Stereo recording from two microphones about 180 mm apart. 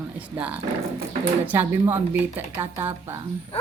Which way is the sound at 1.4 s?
10° right (ahead or behind).